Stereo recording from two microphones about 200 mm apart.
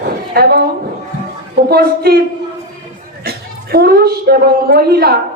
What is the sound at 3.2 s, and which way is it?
A woman's voice, 50° right (ahead or behind).